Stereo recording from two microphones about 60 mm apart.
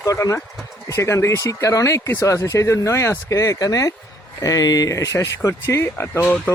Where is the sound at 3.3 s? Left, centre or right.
Left.